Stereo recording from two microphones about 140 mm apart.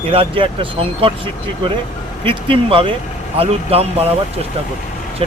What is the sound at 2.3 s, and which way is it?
Speech, 40° right (ahead or behind).